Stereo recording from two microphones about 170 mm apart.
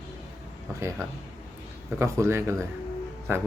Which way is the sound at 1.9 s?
15° right (ahead or behind).